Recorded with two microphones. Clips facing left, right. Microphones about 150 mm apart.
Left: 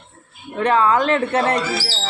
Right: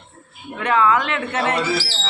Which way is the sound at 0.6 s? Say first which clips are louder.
Left 2 dB; 35° left (ahead or behind).